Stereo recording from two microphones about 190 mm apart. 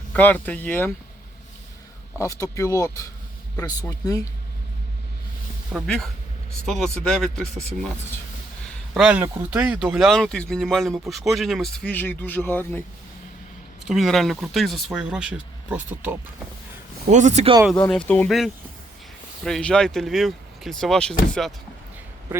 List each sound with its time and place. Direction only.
0.1 s speech: 10° left (ahead or behind)
2.1 s speech: 15° left (ahead or behind)
5.7 s speech: centre (ahead or behind)
8.9 s speech: 5° right (ahead or behind)
13.8 s speech: centre (ahead or behind)
17.1 s speech: 40° right (ahead or behind)
17.7 s speech: 5° left (ahead or behind)